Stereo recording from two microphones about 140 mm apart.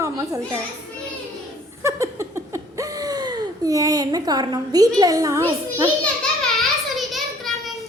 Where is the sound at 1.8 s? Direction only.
20° right (ahead or behind).